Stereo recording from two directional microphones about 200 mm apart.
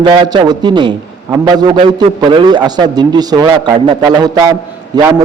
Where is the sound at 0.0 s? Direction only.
20° right (ahead or behind).